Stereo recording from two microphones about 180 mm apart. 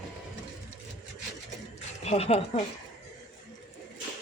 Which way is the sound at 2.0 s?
35° left (ahead or behind).